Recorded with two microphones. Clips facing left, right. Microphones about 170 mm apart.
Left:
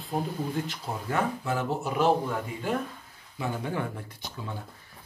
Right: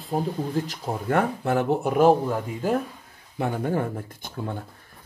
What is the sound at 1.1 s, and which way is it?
Speech, 60° right (ahead or behind).